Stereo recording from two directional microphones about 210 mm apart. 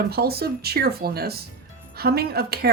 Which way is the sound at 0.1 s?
45° right (ahead or behind).